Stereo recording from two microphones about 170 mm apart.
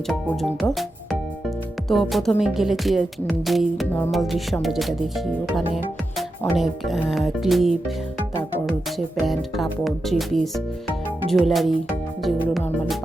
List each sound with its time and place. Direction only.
0.1 s speech: centre (ahead or behind)
6.6 s speech: centre (ahead or behind)
9.2 s speech: centre (ahead or behind)